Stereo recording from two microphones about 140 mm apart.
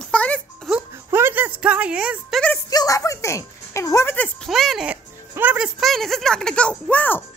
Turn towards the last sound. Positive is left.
turn(degrees=10)  # may be behind; listen again after turning